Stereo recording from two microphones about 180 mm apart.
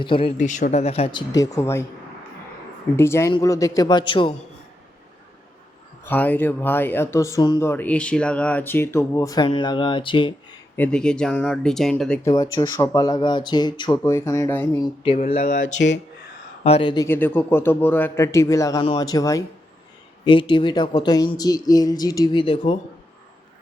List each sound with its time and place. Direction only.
0.0 s speech: 30° left (ahead or behind)
0.3 s speech: 45° left (ahead or behind); by 1.8 s 15° left (ahead or behind)
2.9 s speech: 15° left (ahead or behind)
6.1 s speech: 10° left (ahead or behind); by 10.3 s 30° left (ahead or behind)
10.8 s speech: 5° left (ahead or behind)
12.2 s speech: 20° left (ahead or behind)
15.1 s speech: 35° left (ahead or behind)
15.4 s a sound: 50° left (ahead or behind)
16.6 s speech: 30° left (ahead or behind)
17.1 s speech: 10° left (ahead or behind); by 22.8 s 30° left (ahead or behind)